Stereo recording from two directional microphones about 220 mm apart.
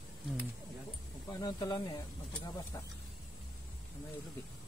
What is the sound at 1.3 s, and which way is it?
Speech, 15° left (ahead or behind).